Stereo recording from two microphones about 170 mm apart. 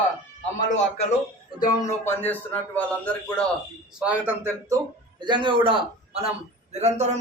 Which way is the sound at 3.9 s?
10° right (ahead or behind).